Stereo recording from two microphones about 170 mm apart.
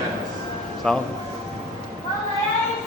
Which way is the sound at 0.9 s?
5° left (ahead or behind).